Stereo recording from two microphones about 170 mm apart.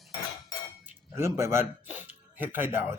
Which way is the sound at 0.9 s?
15° right (ahead or behind).